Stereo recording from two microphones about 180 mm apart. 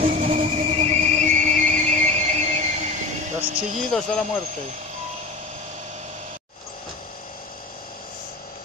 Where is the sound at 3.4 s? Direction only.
50° right (ahead or behind).